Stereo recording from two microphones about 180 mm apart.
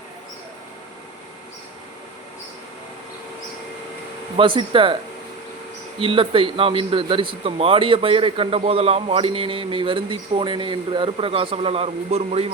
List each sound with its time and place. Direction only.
4.4 s speech: 30° right (ahead or behind)
6.0 s speech: 30° right (ahead or behind)